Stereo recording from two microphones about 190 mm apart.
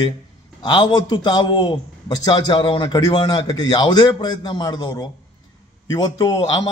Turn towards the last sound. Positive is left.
turn(degrees=20)  # may be behind; listen again after turning